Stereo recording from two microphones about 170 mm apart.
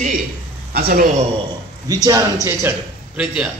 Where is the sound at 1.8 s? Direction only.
20° right (ahead or behind).